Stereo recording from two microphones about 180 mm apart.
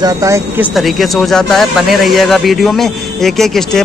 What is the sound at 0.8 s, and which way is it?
Speech, centre (ahead or behind).